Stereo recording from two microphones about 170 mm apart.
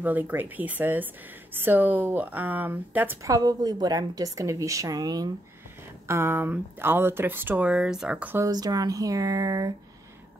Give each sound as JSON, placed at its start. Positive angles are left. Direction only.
{"t": 0.0, "sound": "speech", "side_deg": -10}
{"t": 8.5, "sound": "speech", "side_deg": -20}